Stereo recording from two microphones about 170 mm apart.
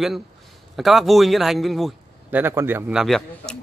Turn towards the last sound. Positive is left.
turn(degrees=0)  # may be behind; listen again after turning